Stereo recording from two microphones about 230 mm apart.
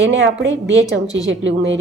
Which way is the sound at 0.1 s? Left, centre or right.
Right.